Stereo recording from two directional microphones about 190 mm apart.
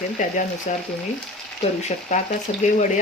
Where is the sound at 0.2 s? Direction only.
40° left (ahead or behind).